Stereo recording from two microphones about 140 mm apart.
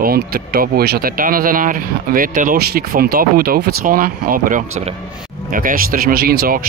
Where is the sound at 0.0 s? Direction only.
90° right.